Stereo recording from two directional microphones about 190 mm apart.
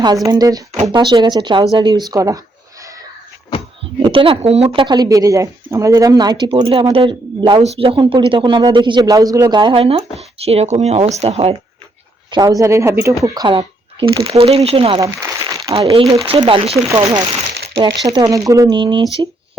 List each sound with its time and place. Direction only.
0.3 s speech: 20° right (ahead or behind)
3.5 s a sound: 30° left (ahead or behind)
4.0 s speech: 30° right (ahead or behind)
12.3 s speech: 20° right (ahead or behind)
15.0 s crumpling: 15° right (ahead or behind)
15.9 s speech: 30° right (ahead or behind)